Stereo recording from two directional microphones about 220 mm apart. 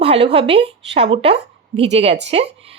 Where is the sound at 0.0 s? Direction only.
25° right (ahead or behind).